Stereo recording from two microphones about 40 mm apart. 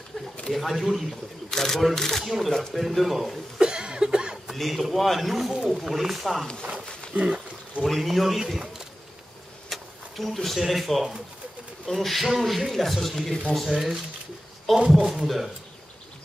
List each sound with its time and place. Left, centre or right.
0.5 s a man's voice: centre
1.5 s speech: centre
2.2 s a man's voice: centre
3.5 s a sound: right
4.5 s a man's voice: centre
6.4 s speech: left
6.7 s a sound: right
7.8 s a man's voice: centre
9.7 s a man's voice: centre